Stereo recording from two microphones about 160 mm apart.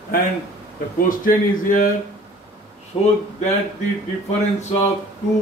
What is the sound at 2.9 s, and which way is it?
Speech, 25° left (ahead or behind).